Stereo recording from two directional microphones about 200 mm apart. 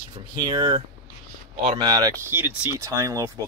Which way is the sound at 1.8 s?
20° right (ahead or behind).